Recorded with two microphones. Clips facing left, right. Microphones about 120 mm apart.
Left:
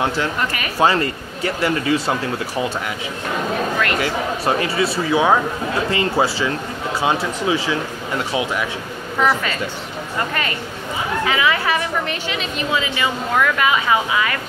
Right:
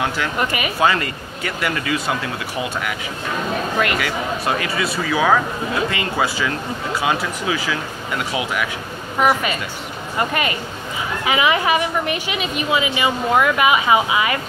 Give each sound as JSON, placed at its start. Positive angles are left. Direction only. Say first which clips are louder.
{"t": 0.4, "sound": "a woman's voice", "louder": "right 2 dB", "side_deg": -15}
{"t": 0.7, "sound": "speech", "louder": "left 3 dB", "side_deg": 30}
{"t": 4.0, "sound": "speech", "louder": "left 2 dB", "side_deg": 30}
{"t": 9.2, "sound": "a woman's voice", "louder": "right 1 dB", "side_deg": -15}
{"t": 11.2, "sound": "a woman's voice", "louder": "right 3 dB", "side_deg": -15}